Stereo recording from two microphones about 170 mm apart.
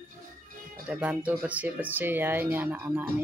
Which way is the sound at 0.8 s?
10° right (ahead or behind).